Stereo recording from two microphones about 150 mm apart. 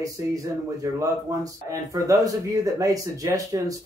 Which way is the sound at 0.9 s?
20° right (ahead or behind).